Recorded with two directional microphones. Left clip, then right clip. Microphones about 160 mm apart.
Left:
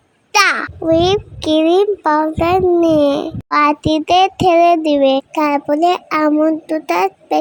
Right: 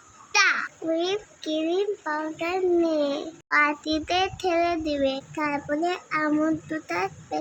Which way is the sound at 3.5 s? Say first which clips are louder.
Left 9 dB; 30° left (ahead or behind).